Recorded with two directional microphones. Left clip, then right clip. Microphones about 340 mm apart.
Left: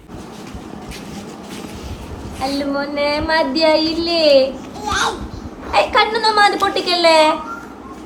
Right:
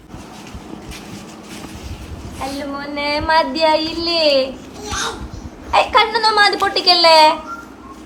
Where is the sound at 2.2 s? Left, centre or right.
Centre.